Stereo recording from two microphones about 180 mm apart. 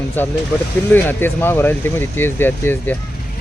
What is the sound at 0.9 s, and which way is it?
Speech, 10° left (ahead or behind).